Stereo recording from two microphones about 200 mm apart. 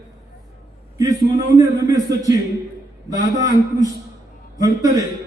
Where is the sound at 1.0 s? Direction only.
15° right (ahead or behind).